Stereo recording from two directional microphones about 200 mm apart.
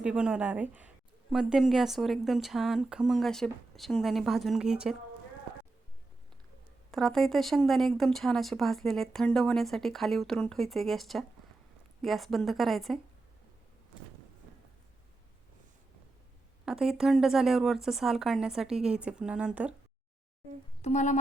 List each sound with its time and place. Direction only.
0.0 s a woman's voice: 5° right (ahead or behind)
6.9 s a woman's voice: centre (ahead or behind)
16.6 s a woman's voice: centre (ahead or behind)
20.8 s speech: 35° left (ahead or behind)